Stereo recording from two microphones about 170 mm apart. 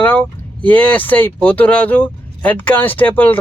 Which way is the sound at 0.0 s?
10° left (ahead or behind).